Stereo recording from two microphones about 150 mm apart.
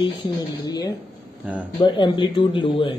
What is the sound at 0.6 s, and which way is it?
Speech, 25° left (ahead or behind).